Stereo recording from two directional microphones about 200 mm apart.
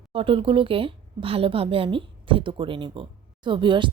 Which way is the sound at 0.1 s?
25° right (ahead or behind).